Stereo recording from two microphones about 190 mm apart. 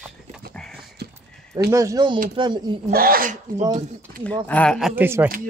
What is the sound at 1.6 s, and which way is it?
Speech, 15° right (ahead or behind).